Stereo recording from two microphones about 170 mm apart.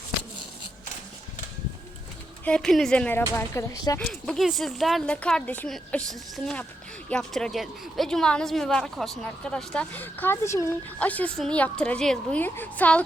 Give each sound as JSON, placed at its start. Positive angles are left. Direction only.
{"t": 2.4, "sound": "a woman's voice", "side_deg": 5}
{"t": 4.0, "sound": "a woman's voice", "side_deg": 0}